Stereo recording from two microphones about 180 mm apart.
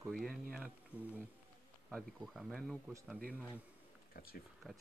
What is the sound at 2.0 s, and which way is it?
Speech, centre (ahead or behind).